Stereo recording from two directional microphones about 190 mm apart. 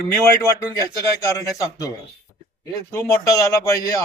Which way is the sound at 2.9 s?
15° left (ahead or behind).